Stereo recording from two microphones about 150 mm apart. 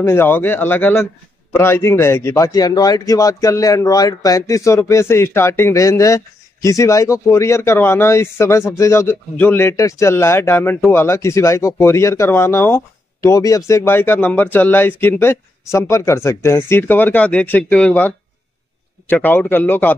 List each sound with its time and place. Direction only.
0.0 s speech: 15° left (ahead or behind)